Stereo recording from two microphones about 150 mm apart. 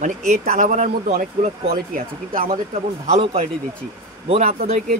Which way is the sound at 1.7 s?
70° right (ahead or behind).